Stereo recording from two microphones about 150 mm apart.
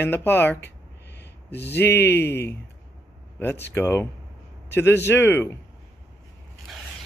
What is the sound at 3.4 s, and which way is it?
Speech, 15° left (ahead or behind).